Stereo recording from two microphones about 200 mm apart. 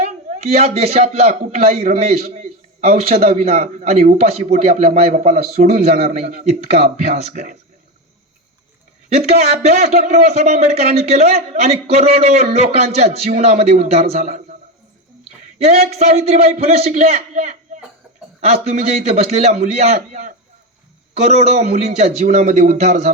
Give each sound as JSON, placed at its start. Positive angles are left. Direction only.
{"t": 0.0, "sound": "a man's voice", "side_deg": -30}
{"t": 6.1, "sound": "speech", "side_deg": -45}
{"t": 9.1, "sound": "speech", "side_deg": -30}
{"t": 15.5, "sound": "a sound", "side_deg": -30}
{"t": 15.9, "sound": "speech", "side_deg": -30}
{"t": 18.7, "sound": "speech", "side_deg": -35}